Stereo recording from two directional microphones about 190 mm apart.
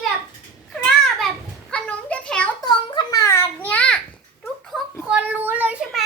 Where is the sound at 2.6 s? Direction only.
20° left (ahead or behind); by 4.0 s 5° left (ahead or behind).